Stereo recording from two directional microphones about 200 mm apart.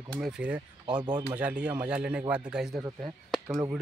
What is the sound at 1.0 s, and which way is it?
Speech, 20° right (ahead or behind).